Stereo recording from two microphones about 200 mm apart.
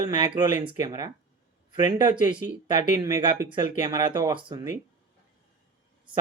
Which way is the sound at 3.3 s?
20° right (ahead or behind).